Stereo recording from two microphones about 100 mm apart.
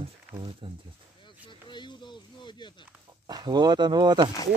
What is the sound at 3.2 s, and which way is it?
Speech, 45° right (ahead or behind).